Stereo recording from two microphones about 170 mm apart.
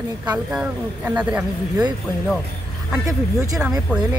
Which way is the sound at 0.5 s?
5° right (ahead or behind).